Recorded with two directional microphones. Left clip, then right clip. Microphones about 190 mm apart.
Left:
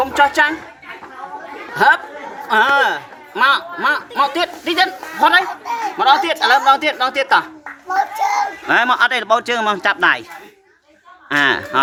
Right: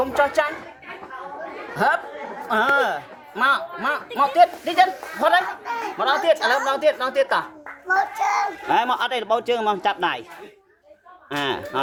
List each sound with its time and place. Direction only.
0.0 s speech: 15° left (ahead or behind)
1.7 s a man's voice: 15° left (ahead or behind)
7.9 s a child's voice: centre (ahead or behind)
11.3 s a man's voice: 10° left (ahead or behind)